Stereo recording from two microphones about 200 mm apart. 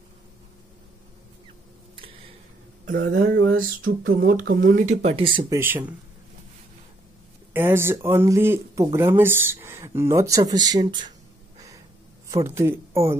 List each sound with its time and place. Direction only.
2.0 s a sound: 25° right (ahead or behind)
3.1 s a sound: 65° right (ahead or behind)
3.8 s speech: 45° right (ahead or behind); by 5.4 s 25° right (ahead or behind)
5.5 s speech: 15° right (ahead or behind)
7.5 s speech: 10° right (ahead or behind)
12.3 s speech: 15° right (ahead or behind)